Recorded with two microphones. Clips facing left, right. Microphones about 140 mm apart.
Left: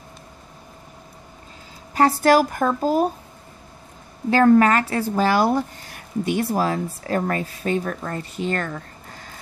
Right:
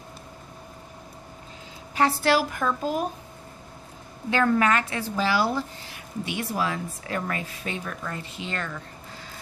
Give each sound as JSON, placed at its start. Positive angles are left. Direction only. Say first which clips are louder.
{"t": 2.0, "sound": "a woman's voice", "louder": "left 6 dB", "side_deg": 45}
{"t": 4.3, "sound": "speech", "louder": "left 7 dB", "side_deg": 40}